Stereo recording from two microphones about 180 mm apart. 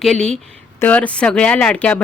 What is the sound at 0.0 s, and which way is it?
A woman's voice, 5° left (ahead or behind).